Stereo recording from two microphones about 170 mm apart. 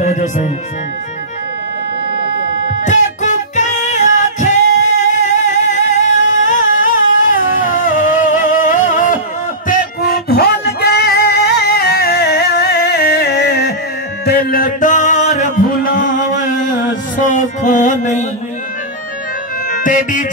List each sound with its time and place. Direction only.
0.0 s music: 45° left (ahead or behind)
2.8 s music: 45° left (ahead or behind)
8.2 s a sound: 50° left (ahead or behind)
9.7 s music: 60° left (ahead or behind); by 18.2 s 45° left (ahead or behind)
19.7 s music: 50° left (ahead or behind)